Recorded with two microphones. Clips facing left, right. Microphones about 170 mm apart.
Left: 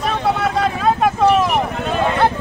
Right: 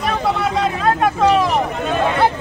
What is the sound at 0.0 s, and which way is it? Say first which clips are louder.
Vehicle: even; centre (ahead or behind).